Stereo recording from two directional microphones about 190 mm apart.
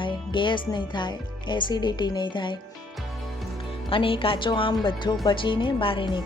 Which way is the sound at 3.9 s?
30° left (ahead or behind).